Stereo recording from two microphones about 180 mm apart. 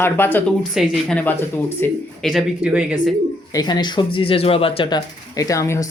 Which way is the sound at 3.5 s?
25° left (ahead or behind).